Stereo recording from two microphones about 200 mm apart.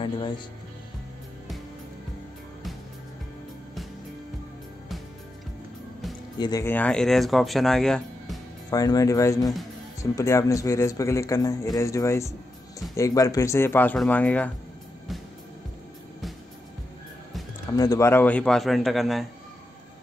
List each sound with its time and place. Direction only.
6.3 s speech: 20° left (ahead or behind); by 8.4 s 5° left (ahead or behind)
8.6 s speech: 20° left (ahead or behind)
17.7 s speech: 15° left (ahead or behind); by 19.2 s centre (ahead or behind)